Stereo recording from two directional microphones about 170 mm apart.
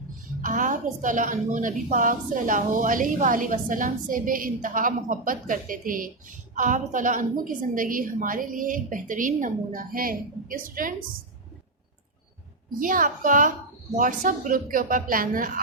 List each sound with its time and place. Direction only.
0.4 s a woman's voice: 50° right (ahead or behind)
12.8 s a woman's voice: 55° right (ahead or behind)